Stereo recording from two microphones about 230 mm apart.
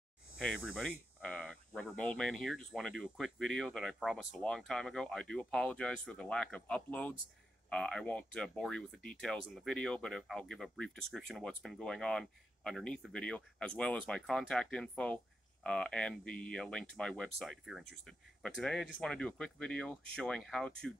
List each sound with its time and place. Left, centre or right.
0.4 s speech: centre